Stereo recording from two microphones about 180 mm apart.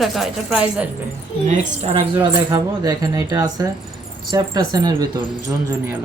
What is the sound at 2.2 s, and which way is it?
Speech, 20° right (ahead or behind).